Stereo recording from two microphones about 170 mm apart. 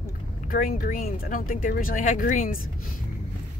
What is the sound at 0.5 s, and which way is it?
Speech, 55° left (ahead or behind).